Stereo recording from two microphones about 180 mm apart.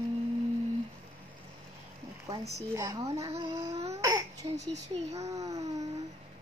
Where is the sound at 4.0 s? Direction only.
20° right (ahead or behind).